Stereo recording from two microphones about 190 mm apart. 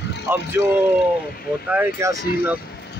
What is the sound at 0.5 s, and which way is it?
Speech, 10° right (ahead or behind).